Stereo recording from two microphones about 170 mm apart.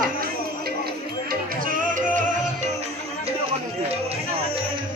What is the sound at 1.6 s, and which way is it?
Music, 55° right (ahead or behind).